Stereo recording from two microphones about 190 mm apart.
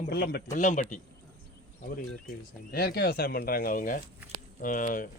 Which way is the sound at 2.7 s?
55° left (ahead or behind).